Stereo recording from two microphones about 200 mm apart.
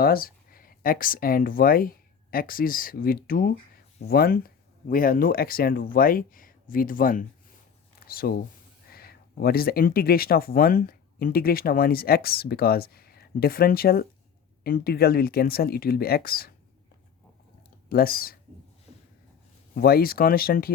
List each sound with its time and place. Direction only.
0.0 s speech: 45° left (ahead or behind)
17.8 s speech: 45° left (ahead or behind)
19.7 s speech: 50° left (ahead or behind)